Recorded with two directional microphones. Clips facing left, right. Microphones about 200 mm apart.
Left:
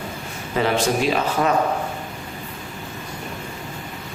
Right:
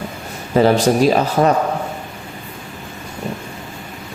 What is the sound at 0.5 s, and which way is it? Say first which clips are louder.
A man's voice: right 7 dB; 40° right (ahead or behind).